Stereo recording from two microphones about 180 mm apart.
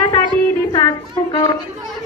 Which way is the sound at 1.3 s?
20° left (ahead or behind).